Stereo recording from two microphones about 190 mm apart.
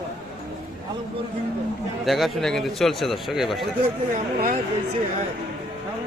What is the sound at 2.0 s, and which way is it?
A man's voice, centre (ahead or behind).